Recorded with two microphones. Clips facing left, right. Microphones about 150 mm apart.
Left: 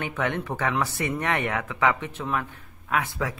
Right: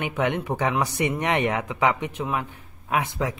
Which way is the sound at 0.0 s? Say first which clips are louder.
Right 3 dB; 20° right (ahead or behind).